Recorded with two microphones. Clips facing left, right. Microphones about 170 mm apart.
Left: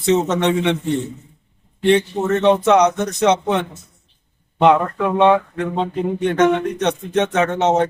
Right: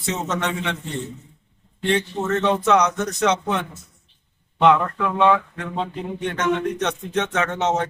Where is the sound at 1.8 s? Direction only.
20° left (ahead or behind).